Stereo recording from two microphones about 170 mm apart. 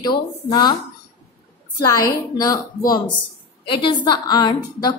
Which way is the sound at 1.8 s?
20° left (ahead or behind).